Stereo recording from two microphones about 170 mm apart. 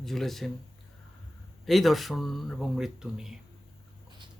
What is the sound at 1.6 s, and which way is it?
Speech, centre (ahead or behind).